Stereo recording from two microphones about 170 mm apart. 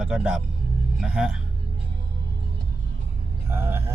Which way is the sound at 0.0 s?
5° right (ahead or behind).